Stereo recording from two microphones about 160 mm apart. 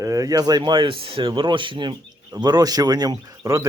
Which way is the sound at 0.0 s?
20° right (ahead or behind).